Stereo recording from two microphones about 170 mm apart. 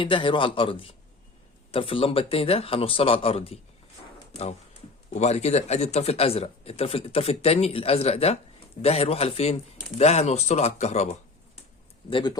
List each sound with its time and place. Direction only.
0.0 s speech: 30° left (ahead or behind)
5.1 s speech: 40° left (ahead or behind)
12.1 s speech: 25° left (ahead or behind)